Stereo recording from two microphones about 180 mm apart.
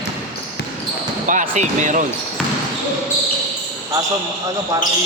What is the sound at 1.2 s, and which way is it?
Basketball bounce, 45° right (ahead or behind).